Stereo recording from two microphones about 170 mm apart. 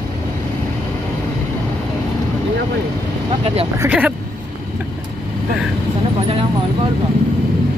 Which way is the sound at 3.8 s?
10° right (ahead or behind).